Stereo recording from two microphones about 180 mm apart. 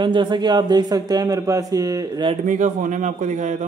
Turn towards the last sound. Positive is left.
turn(degrees=-40)  # may be behind; listen again after turning